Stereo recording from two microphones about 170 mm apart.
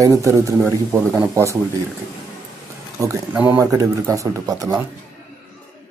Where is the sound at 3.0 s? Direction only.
20° right (ahead or behind).